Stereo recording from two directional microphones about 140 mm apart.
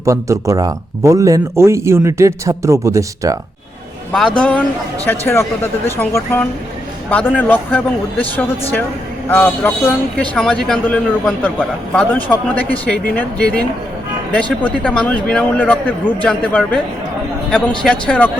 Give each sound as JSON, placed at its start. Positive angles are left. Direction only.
{"t": 0.0, "sound": "speech", "side_deg": -20}
{"t": 4.4, "sound": "speech", "side_deg": 5}